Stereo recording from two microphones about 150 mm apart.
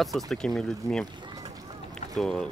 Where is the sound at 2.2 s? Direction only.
5° left (ahead or behind).